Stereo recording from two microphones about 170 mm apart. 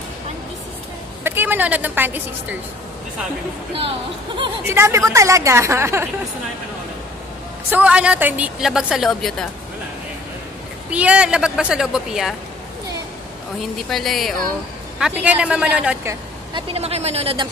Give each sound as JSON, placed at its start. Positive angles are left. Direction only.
{"t": 1.2, "sound": "a woman's voice", "side_deg": -10}
{"t": 4.6, "sound": "a woman's voice", "side_deg": -15}
{"t": 7.7, "sound": "a woman's voice", "side_deg": -10}
{"t": 10.9, "sound": "a woman's voice", "side_deg": -5}
{"t": 13.6, "sound": "a woman's voice", "side_deg": 0}
{"t": 16.7, "sound": "speech", "side_deg": -35}